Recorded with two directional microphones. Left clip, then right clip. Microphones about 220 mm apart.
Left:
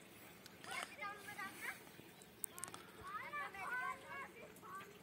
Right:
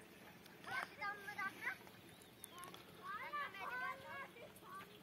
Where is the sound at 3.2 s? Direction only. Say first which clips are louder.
Even; 20° right (ahead or behind).